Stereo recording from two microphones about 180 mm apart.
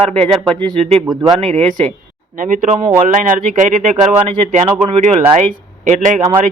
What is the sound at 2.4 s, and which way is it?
Speech, 50° right (ahead or behind).